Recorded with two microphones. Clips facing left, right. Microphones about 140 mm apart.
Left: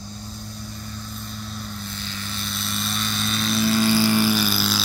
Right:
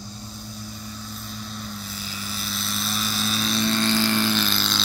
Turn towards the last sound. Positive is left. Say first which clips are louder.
# left 3 dB
turn(degrees=10)  # may be behind; listen again after turning